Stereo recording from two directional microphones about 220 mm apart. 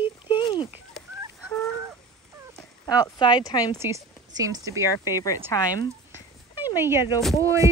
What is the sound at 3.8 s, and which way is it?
Speech, 15° right (ahead or behind).